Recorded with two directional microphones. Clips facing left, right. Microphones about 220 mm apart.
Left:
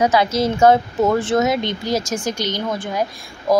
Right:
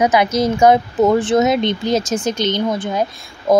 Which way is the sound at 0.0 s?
20° right (ahead or behind).